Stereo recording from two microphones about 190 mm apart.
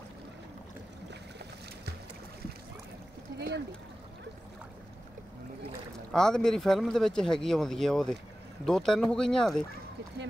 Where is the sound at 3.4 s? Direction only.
60° right (ahead or behind).